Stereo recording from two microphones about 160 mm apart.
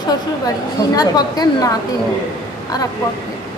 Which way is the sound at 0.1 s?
20° left (ahead or behind).